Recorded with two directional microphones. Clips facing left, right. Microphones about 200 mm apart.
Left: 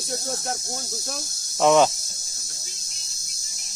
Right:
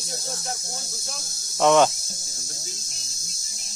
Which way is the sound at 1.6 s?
Centre (ahead or behind).